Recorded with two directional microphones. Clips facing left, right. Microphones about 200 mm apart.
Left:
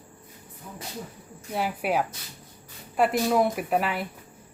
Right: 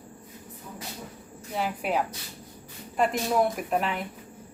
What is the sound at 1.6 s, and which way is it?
Speech, 10° left (ahead or behind).